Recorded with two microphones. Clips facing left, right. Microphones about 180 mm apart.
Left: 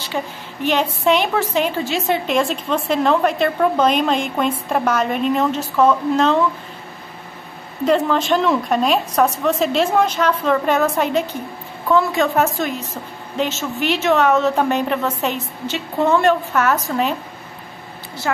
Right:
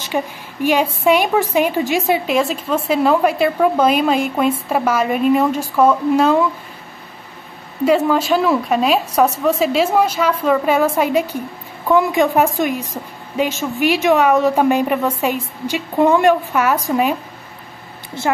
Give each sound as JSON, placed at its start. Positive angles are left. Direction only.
{"t": 0.1, "sound": "a woman's voice", "side_deg": -10}
{"t": 7.8, "sound": "a woman's voice", "side_deg": -10}
{"t": 18.3, "sound": "a woman's voice", "side_deg": -20}